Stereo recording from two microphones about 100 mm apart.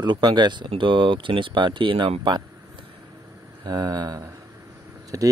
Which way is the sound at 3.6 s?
40° right (ahead or behind).